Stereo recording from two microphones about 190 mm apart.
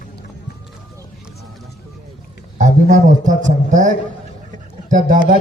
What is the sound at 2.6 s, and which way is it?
A man's voice, 40° right (ahead or behind).